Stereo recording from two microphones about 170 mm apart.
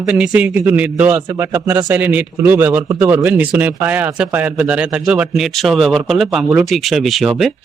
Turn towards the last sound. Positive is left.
turn(degrees=0)  # may be behind; listen again after turning